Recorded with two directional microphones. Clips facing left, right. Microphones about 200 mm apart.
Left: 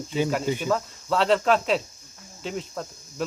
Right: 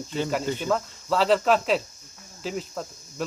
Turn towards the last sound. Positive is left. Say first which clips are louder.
# left 1 dB
turn(degrees=0)  # may be behind; listen again after turning